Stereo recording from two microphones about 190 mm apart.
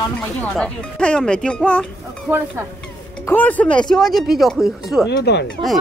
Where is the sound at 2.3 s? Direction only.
10° right (ahead or behind).